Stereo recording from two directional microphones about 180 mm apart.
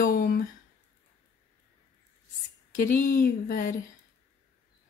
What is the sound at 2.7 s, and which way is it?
Speech, 45° left (ahead or behind).